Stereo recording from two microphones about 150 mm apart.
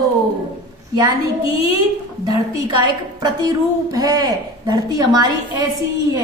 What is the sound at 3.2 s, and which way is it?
A woman's voice, 25° right (ahead or behind).